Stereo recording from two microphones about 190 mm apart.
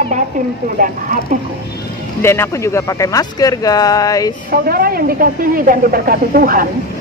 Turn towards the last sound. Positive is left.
turn(degrees=-50)  # may be behind; listen again after turning